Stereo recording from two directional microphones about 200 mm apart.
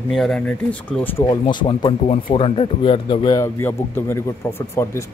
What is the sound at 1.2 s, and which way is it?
Speech, 20° left (ahead or behind).